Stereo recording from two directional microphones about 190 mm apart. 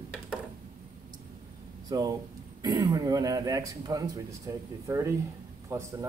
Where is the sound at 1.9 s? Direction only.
20° right (ahead or behind).